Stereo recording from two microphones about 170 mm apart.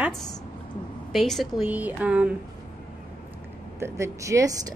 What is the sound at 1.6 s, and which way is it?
Speech, 10° right (ahead or behind).